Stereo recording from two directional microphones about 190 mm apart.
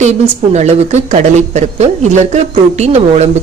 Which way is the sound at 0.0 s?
35° right (ahead or behind).